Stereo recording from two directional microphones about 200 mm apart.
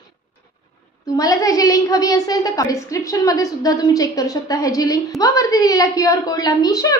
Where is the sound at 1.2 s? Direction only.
15° left (ahead or behind).